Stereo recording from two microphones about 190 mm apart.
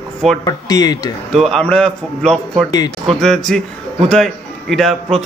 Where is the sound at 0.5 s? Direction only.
20° left (ahead or behind).